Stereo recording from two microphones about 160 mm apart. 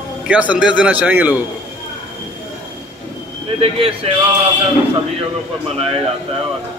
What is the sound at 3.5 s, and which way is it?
Speech, 35° right (ahead or behind).